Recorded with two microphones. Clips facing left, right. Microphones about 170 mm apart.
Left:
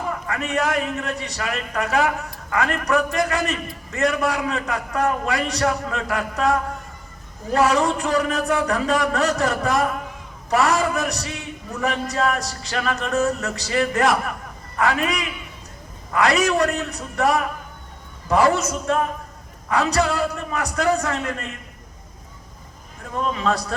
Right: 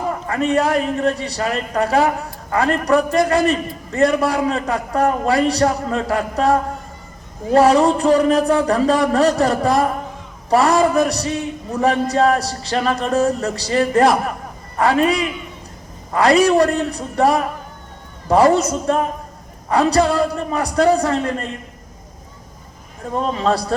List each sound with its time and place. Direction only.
0.3 s a man's voice: 35° right (ahead or behind)
23.1 s a man's voice: 35° right (ahead or behind)